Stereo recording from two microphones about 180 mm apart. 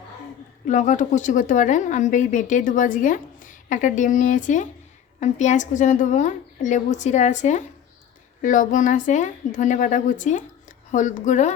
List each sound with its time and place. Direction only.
0.7 s a woman's voice: 45° left (ahead or behind)